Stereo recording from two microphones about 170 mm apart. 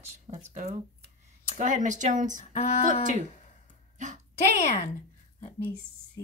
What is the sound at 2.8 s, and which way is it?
Speech, 50° right (ahead or behind).